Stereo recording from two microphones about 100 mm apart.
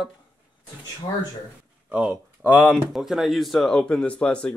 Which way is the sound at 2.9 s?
5° right (ahead or behind).